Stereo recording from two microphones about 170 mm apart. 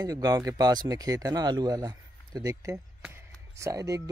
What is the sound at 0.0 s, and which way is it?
Speech, 20° right (ahead or behind).